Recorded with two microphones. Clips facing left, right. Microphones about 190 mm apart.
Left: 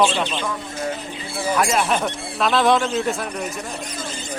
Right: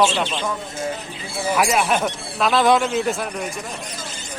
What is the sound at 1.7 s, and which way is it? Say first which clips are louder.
Speech: right 1 dB; centre (ahead or behind).